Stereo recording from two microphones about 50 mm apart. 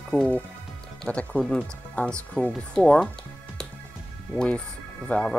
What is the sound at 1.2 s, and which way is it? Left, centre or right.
Speech, left.